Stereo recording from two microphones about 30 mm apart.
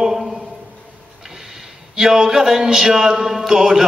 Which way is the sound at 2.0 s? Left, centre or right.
Centre.